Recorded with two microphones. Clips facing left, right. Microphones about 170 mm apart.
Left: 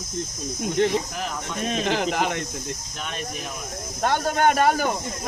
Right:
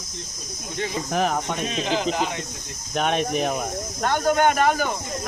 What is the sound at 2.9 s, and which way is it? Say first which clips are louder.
Speech: right 15 dB; 70° right (ahead or behind).